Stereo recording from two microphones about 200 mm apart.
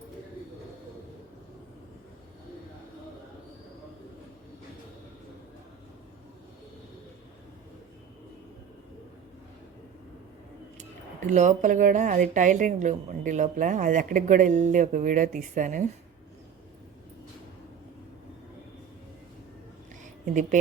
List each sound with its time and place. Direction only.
10.8 s speech: 35° right (ahead or behind)
20.2 s speech: 40° right (ahead or behind)